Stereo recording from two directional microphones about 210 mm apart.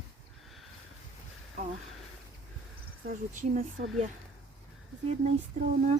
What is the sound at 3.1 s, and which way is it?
Speech, 40° right (ahead or behind).